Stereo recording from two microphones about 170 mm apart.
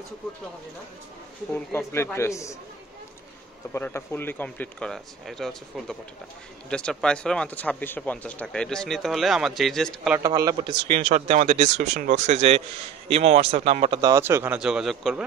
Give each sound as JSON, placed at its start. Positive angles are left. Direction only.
{"t": 1.5, "sound": "speech", "side_deg": 15}
{"t": 3.7, "sound": "speech", "side_deg": 15}
{"t": 10.2, "sound": "speech", "side_deg": -20}
{"t": 11.1, "sound": "a man's voice", "side_deg": -45}
{"t": 14.6, "sound": "speech", "side_deg": -5}